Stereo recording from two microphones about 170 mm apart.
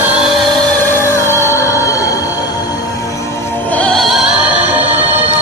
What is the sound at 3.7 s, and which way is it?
Music, 5° left (ahead or behind).